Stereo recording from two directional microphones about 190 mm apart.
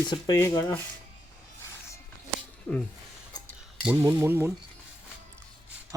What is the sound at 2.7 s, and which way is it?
Speech, 5° left (ahead or behind).